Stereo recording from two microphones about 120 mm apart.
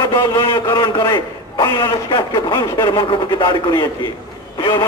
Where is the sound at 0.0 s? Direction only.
25° left (ahead or behind).